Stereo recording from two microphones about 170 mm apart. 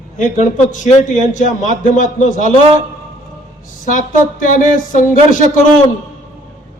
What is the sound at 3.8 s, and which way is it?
A man's voice, 50° left (ahead or behind).